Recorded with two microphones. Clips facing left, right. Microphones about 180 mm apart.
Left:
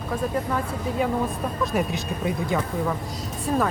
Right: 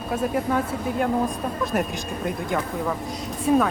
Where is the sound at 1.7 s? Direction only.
Centre (ahead or behind).